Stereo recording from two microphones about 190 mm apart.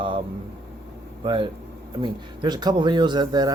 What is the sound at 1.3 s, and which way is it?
A man's voice, 25° right (ahead or behind).